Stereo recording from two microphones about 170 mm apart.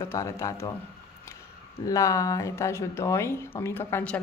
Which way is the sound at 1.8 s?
20° left (ahead or behind).